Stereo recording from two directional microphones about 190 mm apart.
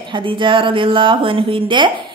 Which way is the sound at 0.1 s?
25° right (ahead or behind).